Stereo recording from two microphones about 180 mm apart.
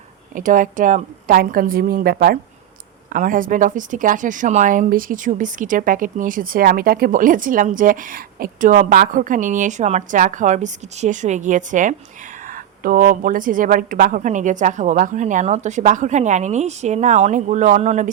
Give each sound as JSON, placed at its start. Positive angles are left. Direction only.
{"t": 0.3, "sound": "a woman's voice", "side_deg": -45}